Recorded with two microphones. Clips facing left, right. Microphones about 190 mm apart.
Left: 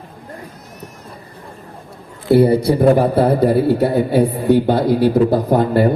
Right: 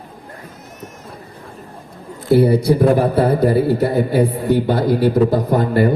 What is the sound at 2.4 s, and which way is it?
A man's voice, 60° left (ahead or behind).